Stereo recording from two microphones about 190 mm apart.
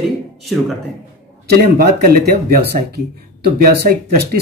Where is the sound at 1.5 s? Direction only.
55° right (ahead or behind).